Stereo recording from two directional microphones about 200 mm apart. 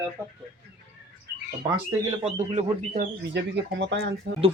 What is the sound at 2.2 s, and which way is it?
Speech, 35° right (ahead or behind).